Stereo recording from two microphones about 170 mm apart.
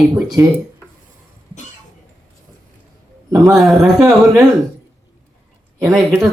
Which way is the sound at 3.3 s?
20° right (ahead or behind).